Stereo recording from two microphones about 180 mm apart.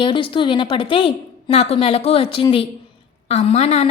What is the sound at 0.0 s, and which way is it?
A woman's voice, 30° left (ahead or behind).